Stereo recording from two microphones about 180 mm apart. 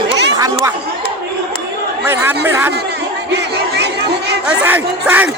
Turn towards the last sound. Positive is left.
turn(degrees=-10)  # may be behind; listen again after turning